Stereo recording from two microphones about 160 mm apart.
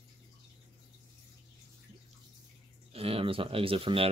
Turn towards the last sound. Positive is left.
turn(degrees=-35)  # may be behind; listen again after turning